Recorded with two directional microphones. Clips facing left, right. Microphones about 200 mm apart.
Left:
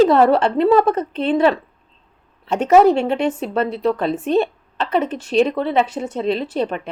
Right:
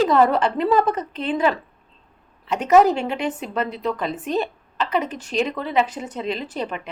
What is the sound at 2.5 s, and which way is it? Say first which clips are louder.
A woman's voice: left 3 dB; 25° left (ahead or behind).